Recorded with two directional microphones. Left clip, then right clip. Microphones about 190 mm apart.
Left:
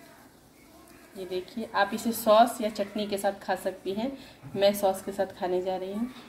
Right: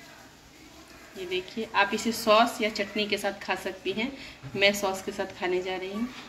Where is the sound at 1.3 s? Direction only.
30° left (ahead or behind).